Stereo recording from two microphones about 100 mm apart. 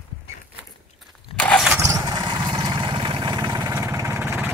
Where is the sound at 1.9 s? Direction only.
40° right (ahead or behind).